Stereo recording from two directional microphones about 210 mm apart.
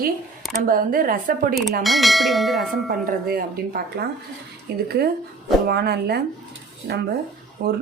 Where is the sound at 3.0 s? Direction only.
45° right (ahead or behind).